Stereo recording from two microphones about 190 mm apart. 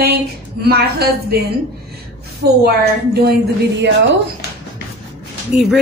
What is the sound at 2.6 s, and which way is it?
Speech, 55° right (ahead or behind).